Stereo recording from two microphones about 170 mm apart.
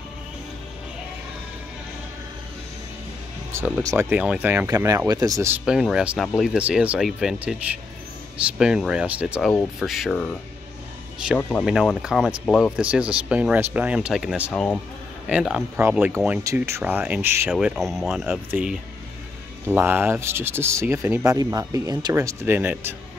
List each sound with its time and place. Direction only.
3.5 s speech: 10° right (ahead or behind)
5.7 s speech: 5° right (ahead or behind)
11.6 s speech: centre (ahead or behind)
14.5 s speech: 5° left (ahead or behind)
15.2 s speech: 5° right (ahead or behind)